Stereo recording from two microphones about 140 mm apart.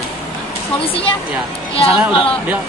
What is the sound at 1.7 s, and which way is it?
Speech, 40° left (ahead or behind).